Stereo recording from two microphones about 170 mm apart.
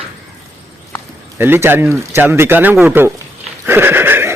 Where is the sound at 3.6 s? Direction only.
15° right (ahead or behind).